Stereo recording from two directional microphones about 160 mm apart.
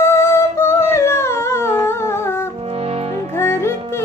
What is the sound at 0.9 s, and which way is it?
Humming, 15° left (ahead or behind).